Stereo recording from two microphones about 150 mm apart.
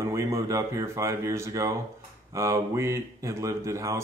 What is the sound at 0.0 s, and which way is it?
Speech, 20° right (ahead or behind).